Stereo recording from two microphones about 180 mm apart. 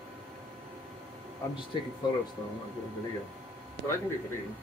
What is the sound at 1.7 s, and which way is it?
Speech, 25° left (ahead or behind).